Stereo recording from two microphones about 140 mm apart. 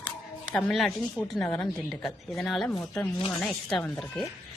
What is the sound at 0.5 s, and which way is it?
Speech, centre (ahead or behind).